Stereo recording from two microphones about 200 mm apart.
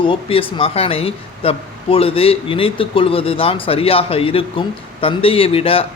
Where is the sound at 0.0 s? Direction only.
25° left (ahead or behind).